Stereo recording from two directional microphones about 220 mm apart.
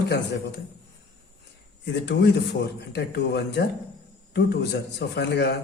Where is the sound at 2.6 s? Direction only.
50° left (ahead or behind).